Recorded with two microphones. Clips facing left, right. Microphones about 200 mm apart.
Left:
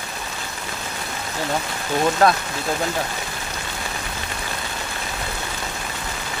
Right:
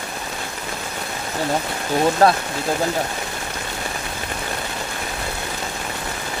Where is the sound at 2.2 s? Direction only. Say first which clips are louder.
Right 2 dB; 30° right (ahead or behind).